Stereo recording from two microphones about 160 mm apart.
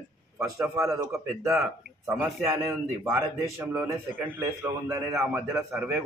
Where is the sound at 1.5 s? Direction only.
5° right (ahead or behind).